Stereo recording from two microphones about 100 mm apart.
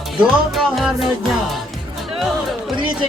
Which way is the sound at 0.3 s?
Centre (ahead or behind).